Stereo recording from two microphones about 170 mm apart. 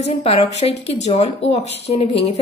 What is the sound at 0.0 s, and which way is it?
Speech, 35° left (ahead or behind).